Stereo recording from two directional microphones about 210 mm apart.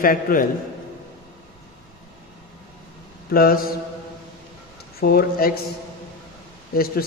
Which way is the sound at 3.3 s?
45° left (ahead or behind).